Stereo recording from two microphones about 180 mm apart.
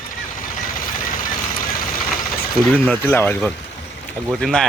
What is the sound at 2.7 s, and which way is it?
Speech, 5° left (ahead or behind).